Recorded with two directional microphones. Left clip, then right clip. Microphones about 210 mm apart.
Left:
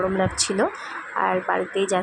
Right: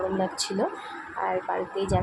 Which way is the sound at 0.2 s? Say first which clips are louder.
Left 5 dB; 15° left (ahead or behind).